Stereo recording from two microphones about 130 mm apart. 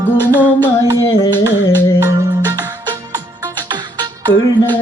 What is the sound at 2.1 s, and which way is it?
Music, 25° right (ahead or behind).